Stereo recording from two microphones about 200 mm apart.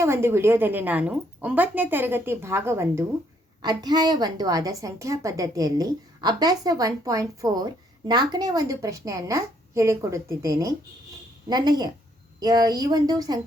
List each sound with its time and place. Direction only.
0.0 s a woman's voice: 10° right (ahead or behind)